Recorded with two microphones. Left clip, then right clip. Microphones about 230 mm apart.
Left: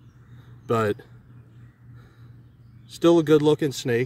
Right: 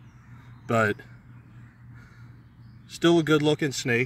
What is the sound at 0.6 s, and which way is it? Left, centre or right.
Speech, centre.